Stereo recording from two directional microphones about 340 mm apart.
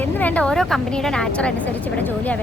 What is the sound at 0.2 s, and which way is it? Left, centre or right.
A woman's voice, centre.